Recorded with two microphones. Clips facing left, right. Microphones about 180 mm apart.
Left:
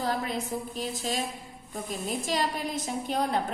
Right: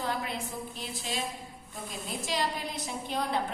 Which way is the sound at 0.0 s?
40° left (ahead or behind).